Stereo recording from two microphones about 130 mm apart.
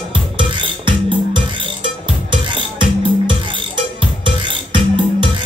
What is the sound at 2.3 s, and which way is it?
Music, 40° right (ahead or behind).